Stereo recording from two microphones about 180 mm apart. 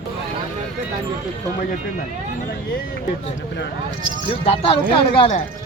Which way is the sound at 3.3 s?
75° left (ahead or behind).